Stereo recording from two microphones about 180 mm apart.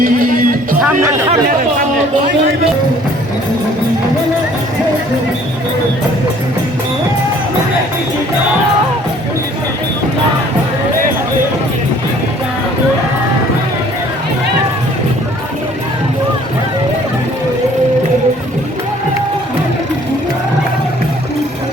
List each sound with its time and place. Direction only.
0.0 s music: 50° right (ahead or behind)
0.8 s speech: 10° right (ahead or behind)